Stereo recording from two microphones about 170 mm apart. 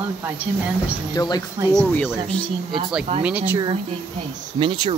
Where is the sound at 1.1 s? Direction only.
25° left (ahead or behind).